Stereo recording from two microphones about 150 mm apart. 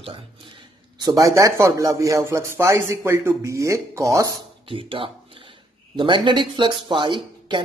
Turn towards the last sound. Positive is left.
turn(degrees=-30)  # may be behind; listen again after turning